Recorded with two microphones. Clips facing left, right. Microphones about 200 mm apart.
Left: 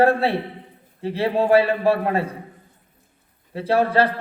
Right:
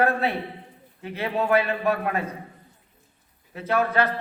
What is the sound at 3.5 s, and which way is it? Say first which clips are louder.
Speech: left 4 dB; 30° left (ahead or behind).